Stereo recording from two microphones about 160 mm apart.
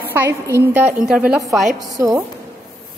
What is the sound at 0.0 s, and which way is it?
A woman's voice, 15° right (ahead or behind).